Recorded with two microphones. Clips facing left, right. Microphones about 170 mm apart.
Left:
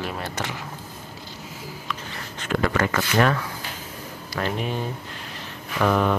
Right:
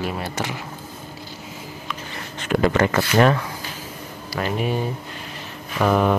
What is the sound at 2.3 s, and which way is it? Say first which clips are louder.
Speech: right 4 dB; 20° right (ahead or behind).